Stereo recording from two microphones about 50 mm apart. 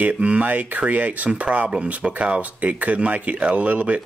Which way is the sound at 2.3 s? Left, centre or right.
Right.